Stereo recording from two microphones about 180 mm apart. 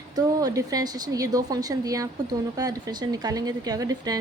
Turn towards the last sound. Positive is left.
turn(degrees=-20)  # may be behind; listen again after turning